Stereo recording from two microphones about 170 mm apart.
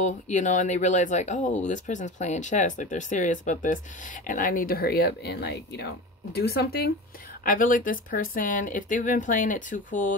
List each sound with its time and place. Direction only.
0.0 s speech: 45° left (ahead or behind); by 6.9 s 65° left (ahead or behind)
7.4 s speech: 55° left (ahead or behind)